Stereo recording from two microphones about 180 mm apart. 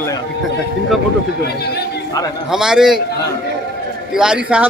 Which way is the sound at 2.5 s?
5° right (ahead or behind).